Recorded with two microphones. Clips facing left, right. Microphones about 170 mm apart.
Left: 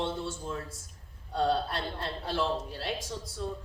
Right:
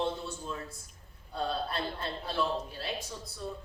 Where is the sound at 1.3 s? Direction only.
85° left.